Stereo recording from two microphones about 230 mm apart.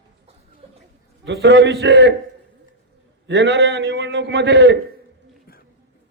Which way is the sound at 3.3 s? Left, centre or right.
Right.